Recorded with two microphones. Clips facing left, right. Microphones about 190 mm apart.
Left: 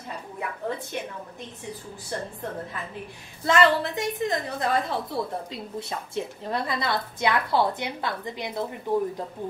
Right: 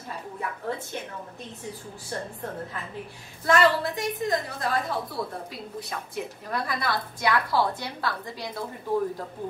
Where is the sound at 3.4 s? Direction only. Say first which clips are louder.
Left 1 dB; 25° left (ahead or behind).